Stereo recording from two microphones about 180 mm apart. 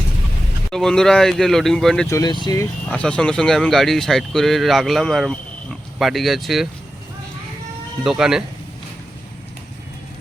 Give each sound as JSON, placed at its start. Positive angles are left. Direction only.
{"t": 0.7, "sound": "speech", "side_deg": 5}
{"t": 2.0, "sound": "speech", "side_deg": 20}
{"t": 2.9, "sound": "speech", "side_deg": 5}
{"t": 8.0, "sound": "speech", "side_deg": -5}